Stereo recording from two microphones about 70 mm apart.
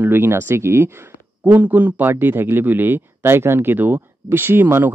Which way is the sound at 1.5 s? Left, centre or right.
Right.